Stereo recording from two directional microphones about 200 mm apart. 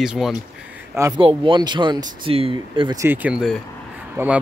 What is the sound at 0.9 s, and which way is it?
Speech, 15° right (ahead or behind).